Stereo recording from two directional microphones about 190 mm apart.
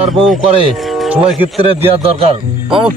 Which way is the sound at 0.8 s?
5° right (ahead or behind).